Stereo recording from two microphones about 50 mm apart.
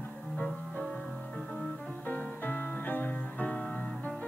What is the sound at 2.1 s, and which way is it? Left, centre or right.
Music, left.